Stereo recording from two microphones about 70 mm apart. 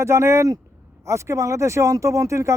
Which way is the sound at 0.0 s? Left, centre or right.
Right.